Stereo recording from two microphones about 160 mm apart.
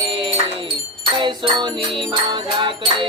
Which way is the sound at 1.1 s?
30° right (ahead or behind).